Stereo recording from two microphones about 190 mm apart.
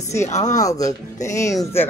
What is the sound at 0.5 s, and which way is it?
A woman's voice, 20° left (ahead or behind).